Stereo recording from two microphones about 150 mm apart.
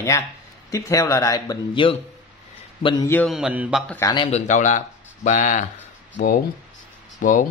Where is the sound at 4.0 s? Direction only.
20° left (ahead or behind).